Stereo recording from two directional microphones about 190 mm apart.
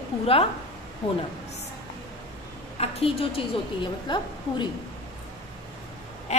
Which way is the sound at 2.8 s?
30° left (ahead or behind).